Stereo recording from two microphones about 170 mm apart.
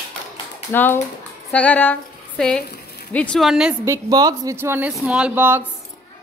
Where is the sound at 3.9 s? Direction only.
25° right (ahead or behind).